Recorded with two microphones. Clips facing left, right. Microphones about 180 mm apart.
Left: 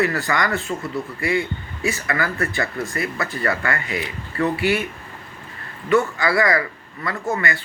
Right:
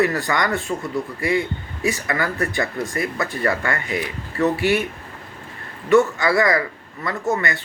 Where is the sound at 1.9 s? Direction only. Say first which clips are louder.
Right 1 dB; 20° right (ahead or behind).